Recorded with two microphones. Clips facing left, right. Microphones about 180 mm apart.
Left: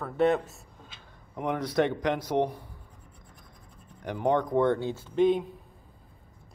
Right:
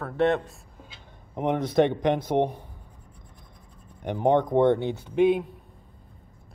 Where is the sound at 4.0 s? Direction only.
20° right (ahead or behind).